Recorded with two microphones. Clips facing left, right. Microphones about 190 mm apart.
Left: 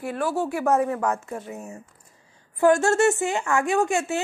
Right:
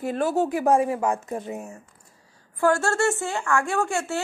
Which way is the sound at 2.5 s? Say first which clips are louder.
Left 3 dB; 20° left (ahead or behind).